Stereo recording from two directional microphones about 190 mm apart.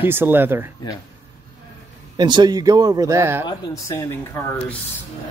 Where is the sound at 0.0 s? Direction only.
10° right (ahead or behind).